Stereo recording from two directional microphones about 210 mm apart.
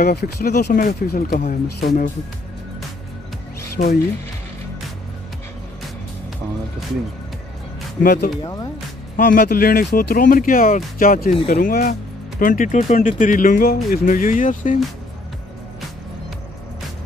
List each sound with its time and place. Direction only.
0.0 s speech: 50° left (ahead or behind)
3.7 s speech: 50° left (ahead or behind)
8.0 s speech: 45° left (ahead or behind)